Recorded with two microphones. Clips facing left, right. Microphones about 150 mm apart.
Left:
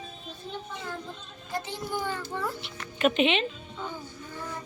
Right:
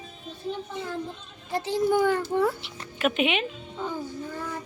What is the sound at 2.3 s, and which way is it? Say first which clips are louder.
Speech: right 9 dB; 60° right (ahead or behind).